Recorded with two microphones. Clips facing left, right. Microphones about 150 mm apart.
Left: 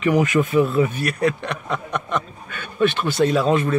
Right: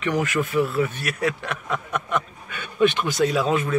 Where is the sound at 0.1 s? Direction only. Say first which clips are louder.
Left 4 dB; 20° left (ahead or behind).